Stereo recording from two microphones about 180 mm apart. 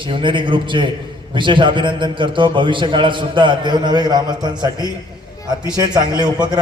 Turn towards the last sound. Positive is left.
turn(degrees=-25)  # may be behind; listen again after turning